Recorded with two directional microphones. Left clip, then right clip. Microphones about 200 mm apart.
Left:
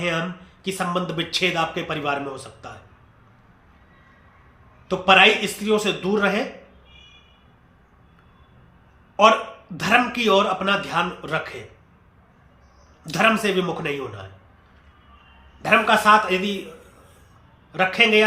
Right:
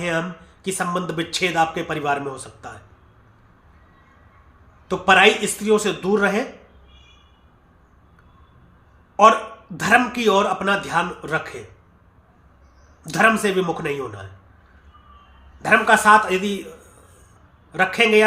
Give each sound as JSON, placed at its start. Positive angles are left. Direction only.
{"t": 0.6, "sound": "a man's voice", "side_deg": -20}
{"t": 4.9, "sound": "a man's voice", "side_deg": -15}
{"t": 9.2, "sound": "a man's voice", "side_deg": -15}
{"t": 13.1, "sound": "a man's voice", "side_deg": -15}
{"t": 15.6, "sound": "speech", "side_deg": -20}
{"t": 17.7, "sound": "a man's voice", "side_deg": -20}